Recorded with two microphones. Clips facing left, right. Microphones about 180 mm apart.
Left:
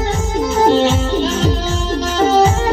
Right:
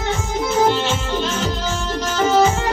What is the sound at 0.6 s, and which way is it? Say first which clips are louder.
Music: left 6 dB; 35° left (ahead or behind).